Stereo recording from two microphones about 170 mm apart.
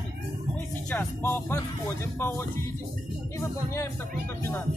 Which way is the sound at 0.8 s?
10° left (ahead or behind).